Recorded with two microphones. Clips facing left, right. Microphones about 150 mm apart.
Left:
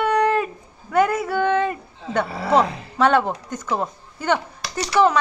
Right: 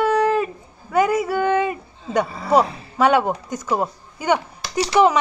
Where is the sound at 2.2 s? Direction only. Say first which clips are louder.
Left 3 dB; 85° left.